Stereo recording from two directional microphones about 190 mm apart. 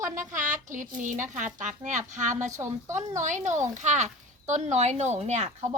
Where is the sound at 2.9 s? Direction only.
40° right (ahead or behind).